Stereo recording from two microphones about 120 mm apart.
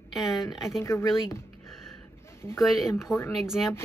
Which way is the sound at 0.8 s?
20° left (ahead or behind).